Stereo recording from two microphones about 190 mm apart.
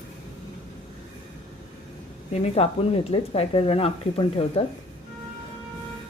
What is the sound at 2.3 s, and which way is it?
Speech, 35° left (ahead or behind).